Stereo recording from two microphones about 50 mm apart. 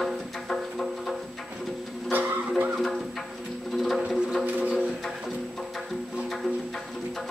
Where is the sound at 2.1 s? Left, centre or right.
Right.